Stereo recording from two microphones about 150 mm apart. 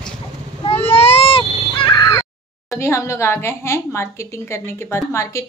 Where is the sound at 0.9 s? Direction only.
45° left (ahead or behind).